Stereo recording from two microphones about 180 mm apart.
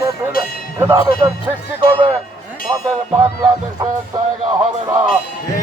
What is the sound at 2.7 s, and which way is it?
Speech, 20° right (ahead or behind).